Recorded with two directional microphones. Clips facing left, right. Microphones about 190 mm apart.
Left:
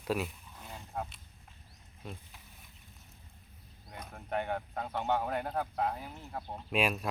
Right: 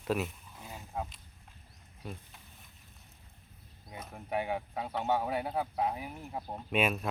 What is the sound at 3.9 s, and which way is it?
Speech, 5° right (ahead or behind).